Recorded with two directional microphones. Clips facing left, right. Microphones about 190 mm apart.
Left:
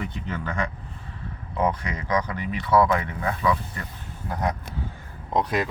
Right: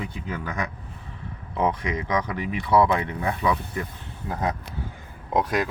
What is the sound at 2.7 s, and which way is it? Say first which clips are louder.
Speech: even; 20° right (ahead or behind).